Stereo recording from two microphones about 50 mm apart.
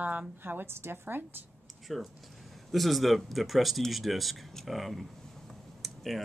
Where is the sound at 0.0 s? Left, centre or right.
Right.